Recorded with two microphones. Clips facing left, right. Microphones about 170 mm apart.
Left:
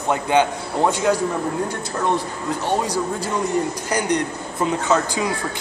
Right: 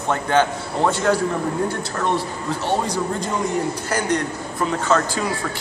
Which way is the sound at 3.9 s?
20° left (ahead or behind).